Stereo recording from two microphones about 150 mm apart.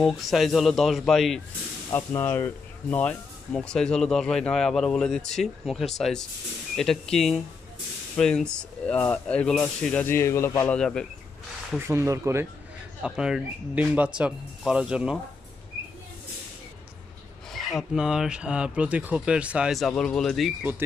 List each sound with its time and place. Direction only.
0.0 s speech: centre (ahead or behind)
1.9 s speech: 15° left (ahead or behind)
10.8 s speech: 5° left (ahead or behind)
11.9 s speech: 20° right (ahead or behind)
13.0 s speech: 5° right (ahead or behind)
17.5 s speech: centre (ahead or behind)